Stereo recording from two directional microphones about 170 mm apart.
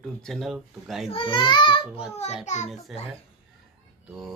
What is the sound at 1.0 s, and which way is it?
Speech, 30° left (ahead or behind).